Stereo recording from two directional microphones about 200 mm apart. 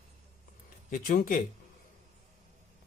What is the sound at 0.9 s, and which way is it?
Speech, 45° left (ahead or behind).